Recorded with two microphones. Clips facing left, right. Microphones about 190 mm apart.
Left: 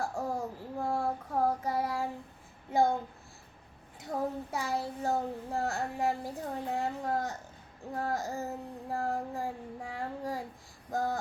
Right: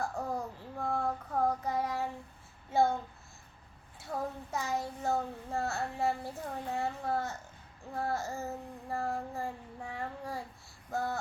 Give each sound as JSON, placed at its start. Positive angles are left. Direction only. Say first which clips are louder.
{"t": 0.0, "sound": "child singing", "louder": "left 2 dB", "side_deg": 10}
{"t": 4.1, "sound": "child singing", "louder": "left 3 dB", "side_deg": 10}